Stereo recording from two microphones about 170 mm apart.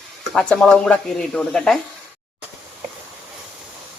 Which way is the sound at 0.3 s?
5° left (ahead or behind).